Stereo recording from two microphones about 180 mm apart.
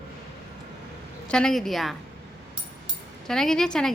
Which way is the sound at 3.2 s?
5° left (ahead or behind).